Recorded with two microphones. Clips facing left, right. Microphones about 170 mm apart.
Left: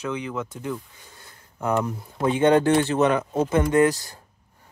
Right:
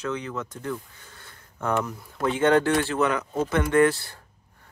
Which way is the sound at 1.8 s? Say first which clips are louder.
Left 3 dB; 25° left (ahead or behind).